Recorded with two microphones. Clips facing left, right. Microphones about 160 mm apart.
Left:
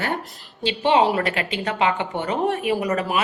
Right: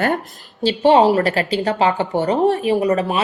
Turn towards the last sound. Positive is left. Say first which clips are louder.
# right 5 dB
turn(degrees=-30)  # may be behind; listen again after turning